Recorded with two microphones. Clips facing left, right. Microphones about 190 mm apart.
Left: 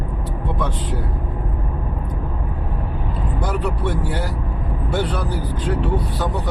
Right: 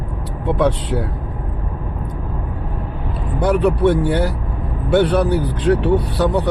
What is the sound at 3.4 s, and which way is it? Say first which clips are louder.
Speech: right 10 dB; 65° right (ahead or behind).